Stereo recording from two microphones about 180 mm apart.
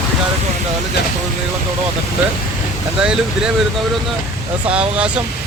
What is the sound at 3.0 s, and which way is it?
Speech, 5° right (ahead or behind).